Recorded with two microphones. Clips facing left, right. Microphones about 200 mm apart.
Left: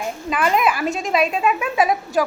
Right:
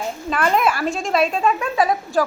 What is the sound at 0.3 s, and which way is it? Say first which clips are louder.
Child singing: even; 5° left (ahead or behind).